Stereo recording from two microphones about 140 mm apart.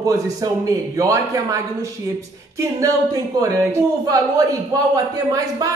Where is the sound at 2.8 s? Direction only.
25° right (ahead or behind).